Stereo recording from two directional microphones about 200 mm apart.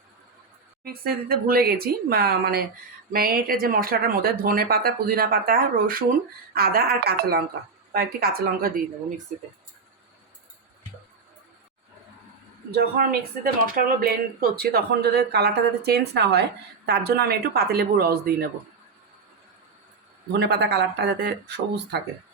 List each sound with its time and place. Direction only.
0.9 s speech: 50° right (ahead or behind)
12.7 s speech: 50° right (ahead or behind)
20.4 s speech: 55° right (ahead or behind)